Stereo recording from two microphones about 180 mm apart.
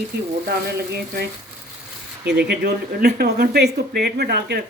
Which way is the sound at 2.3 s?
65° right (ahead or behind).